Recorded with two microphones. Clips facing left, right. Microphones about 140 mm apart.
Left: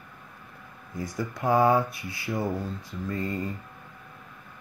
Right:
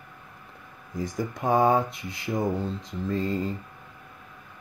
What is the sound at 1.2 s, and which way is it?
Mantra, 20° right (ahead or behind).